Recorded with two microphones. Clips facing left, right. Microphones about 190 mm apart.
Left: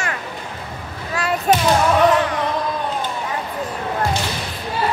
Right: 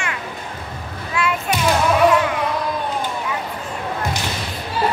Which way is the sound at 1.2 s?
40° left (ahead or behind).